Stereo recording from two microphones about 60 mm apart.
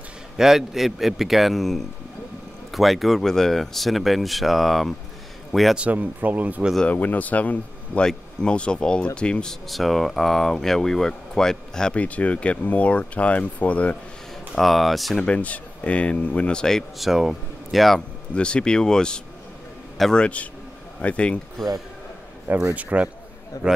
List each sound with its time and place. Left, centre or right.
0.4 s a man's voice: centre
5.8 s speech: right
6.9 s speech: left
8.0 s speech: centre
9.7 s speech: centre
12.0 s speech: left
14.5 s speech: centre
15.2 s speech: left
17.0 s speech: centre
18.3 s speech: centre
21.0 s speech: left
21.6 s speech: centre
22.8 s speech: right
23.5 s a man's voice: left